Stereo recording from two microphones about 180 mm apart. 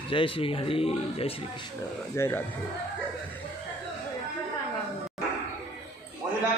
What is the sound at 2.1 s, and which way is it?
Speech, 15° left (ahead or behind).